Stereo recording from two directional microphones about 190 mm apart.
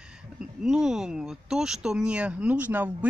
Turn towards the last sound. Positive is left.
turn(degrees=-10)  # may be behind; listen again after turning